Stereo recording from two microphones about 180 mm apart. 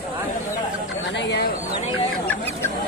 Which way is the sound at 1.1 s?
70° left (ahead or behind).